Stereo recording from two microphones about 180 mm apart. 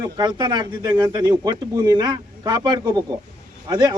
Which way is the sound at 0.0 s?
25° right (ahead or behind).